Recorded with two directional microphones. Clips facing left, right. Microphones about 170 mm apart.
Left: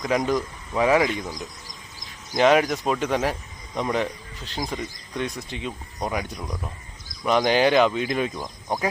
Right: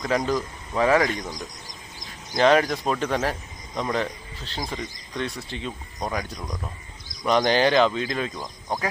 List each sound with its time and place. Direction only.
0.0 s a man's voice: 20° left (ahead or behind)
0.3 s a man's voice: centre (ahead or behind)
0.8 s speech: 10° left (ahead or behind)
2.3 s speech: 10° left (ahead or behind)